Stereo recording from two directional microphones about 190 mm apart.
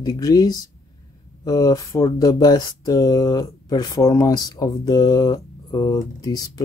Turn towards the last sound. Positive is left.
turn(degrees=20)  # may be behind; listen again after turning